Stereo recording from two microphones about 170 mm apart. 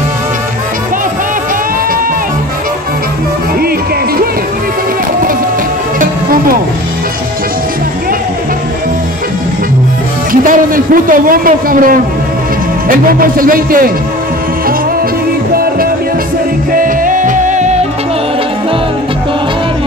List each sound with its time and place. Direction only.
5.9 s music: 55° right (ahead or behind)
10.4 s a man's voice: 55° right (ahead or behind)
15.5 s music: 60° right (ahead or behind)